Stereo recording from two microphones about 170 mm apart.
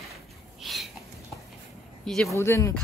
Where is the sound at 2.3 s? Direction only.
15° left (ahead or behind).